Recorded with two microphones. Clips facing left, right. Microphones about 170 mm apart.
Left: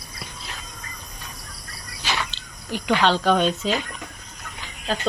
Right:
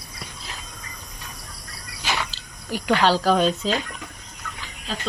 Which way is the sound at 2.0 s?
10° right (ahead or behind).